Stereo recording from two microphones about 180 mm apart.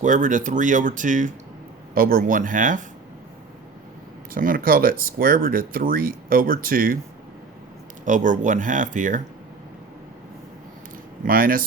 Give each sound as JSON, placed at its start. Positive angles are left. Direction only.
{"t": 0.0, "sound": "speech", "side_deg": -45}
{"t": 4.4, "sound": "speech", "side_deg": -50}
{"t": 8.0, "sound": "speech", "side_deg": -45}
{"t": 11.3, "sound": "speech", "side_deg": -50}